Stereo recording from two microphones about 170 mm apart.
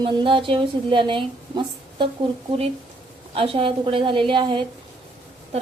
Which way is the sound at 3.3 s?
35° right (ahead or behind).